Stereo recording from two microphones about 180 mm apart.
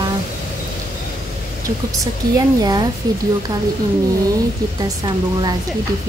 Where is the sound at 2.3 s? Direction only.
20° right (ahead or behind).